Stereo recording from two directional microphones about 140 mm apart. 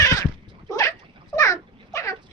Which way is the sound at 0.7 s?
25° left (ahead or behind).